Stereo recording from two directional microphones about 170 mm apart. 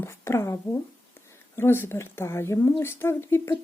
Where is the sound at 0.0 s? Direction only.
15° left (ahead or behind).